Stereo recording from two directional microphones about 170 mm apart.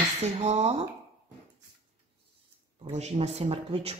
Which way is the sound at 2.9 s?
40° right (ahead or behind).